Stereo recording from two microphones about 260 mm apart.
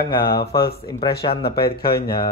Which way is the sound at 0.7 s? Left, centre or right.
Left.